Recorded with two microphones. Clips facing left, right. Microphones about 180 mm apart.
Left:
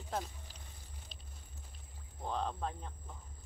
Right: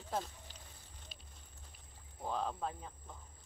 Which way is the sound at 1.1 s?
5° right (ahead or behind).